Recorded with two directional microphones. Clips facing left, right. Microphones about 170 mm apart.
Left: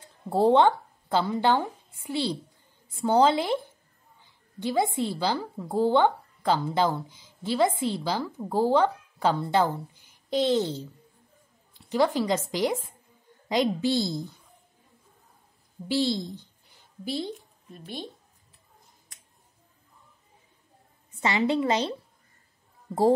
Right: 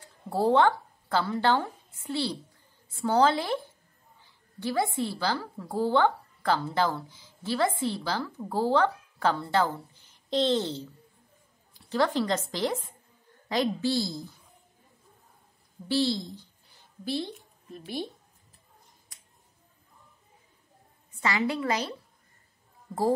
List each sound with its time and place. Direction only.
0.0 s speech: 20° left (ahead or behind)
4.6 s a woman's voice: 20° left (ahead or behind)
15.9 s speech: 15° left (ahead or behind)
17.6 s speech: 5° right (ahead or behind)
21.2 s a woman's voice: 25° left (ahead or behind)